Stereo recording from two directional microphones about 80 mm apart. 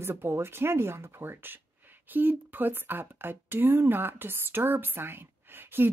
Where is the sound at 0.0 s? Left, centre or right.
Right.